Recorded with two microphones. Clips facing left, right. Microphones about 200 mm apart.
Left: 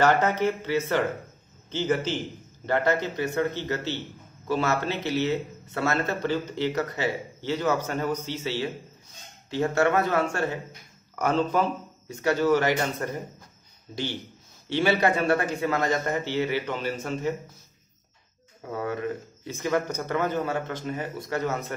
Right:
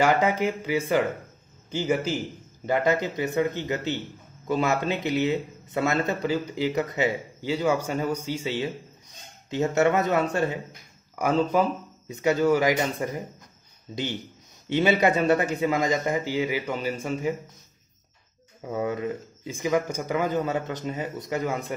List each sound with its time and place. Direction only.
0.0 s a man's voice: 10° right (ahead or behind)
14.7 s speech: 15° right (ahead or behind)
18.7 s speech: 20° right (ahead or behind)